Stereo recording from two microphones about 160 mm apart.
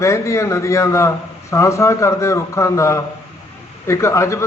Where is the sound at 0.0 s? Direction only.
20° left (ahead or behind).